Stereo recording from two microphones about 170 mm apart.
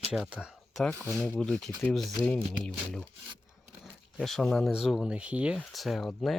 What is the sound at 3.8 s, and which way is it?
Speech, centre (ahead or behind).